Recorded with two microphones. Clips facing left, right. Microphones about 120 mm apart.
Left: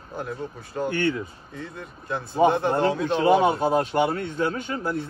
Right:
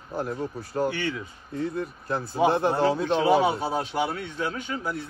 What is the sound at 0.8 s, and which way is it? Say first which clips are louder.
Speech: left 5 dB; centre (ahead or behind).